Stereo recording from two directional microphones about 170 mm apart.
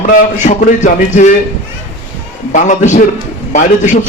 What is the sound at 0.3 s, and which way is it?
Speech, 45° left (ahead or behind).